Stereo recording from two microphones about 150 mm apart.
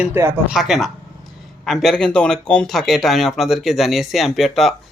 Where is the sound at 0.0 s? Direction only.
15° right (ahead or behind).